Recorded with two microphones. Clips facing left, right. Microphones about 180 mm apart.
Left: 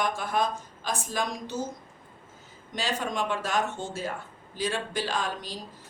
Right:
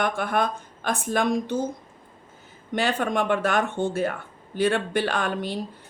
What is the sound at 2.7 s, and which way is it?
A woman's voice, 60° right (ahead or behind).